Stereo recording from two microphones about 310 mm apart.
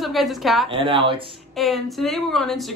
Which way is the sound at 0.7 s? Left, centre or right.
Centre.